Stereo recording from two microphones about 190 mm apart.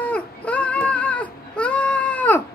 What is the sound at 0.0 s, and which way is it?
Baby cry, 5° left (ahead or behind).